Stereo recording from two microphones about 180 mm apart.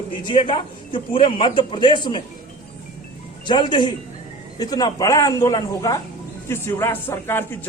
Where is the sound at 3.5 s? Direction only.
25° left (ahead or behind).